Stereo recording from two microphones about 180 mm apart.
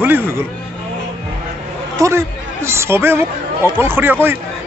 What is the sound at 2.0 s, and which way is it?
A woman's voice, 15° right (ahead or behind).